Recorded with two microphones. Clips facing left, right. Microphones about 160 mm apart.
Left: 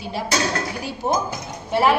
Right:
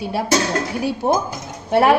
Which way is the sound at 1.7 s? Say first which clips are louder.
Right 4 dB; 55° right (ahead or behind).